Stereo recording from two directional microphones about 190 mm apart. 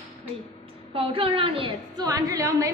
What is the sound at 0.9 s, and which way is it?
A woman's voice, 30° right (ahead or behind).